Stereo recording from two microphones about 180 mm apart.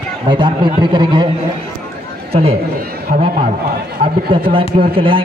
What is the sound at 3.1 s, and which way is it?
Speech, 45° right (ahead or behind).